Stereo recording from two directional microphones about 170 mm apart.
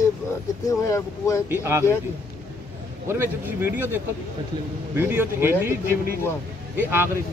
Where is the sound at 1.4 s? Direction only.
15° right (ahead or behind).